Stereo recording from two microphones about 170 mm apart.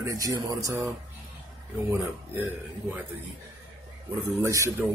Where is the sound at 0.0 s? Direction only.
20° right (ahead or behind).